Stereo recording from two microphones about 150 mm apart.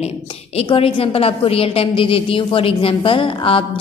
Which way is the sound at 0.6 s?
40° left (ahead or behind).